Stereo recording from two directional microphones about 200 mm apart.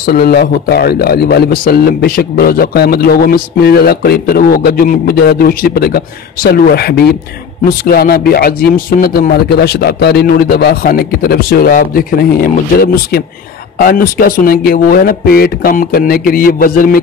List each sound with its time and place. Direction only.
0.0 s a man's voice: 50° left (ahead or behind)